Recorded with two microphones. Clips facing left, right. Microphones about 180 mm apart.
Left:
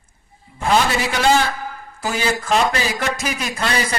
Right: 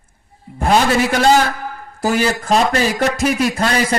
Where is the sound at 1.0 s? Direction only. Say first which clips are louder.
Right 4 dB; 45° right (ahead or behind).